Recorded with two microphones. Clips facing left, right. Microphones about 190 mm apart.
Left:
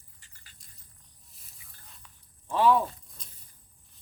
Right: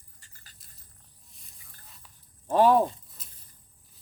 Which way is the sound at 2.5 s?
45° right (ahead or behind).